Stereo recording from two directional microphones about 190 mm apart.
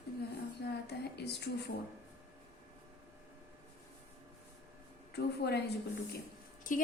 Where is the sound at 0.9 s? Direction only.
60° left (ahead or behind).